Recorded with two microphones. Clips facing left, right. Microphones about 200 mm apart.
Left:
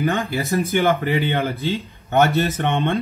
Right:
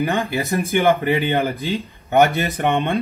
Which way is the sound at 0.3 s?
15° right (ahead or behind).